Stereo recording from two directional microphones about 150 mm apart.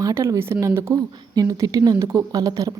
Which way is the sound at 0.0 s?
20° right (ahead or behind).